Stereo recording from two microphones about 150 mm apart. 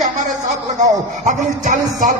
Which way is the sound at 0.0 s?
55° right (ahead or behind).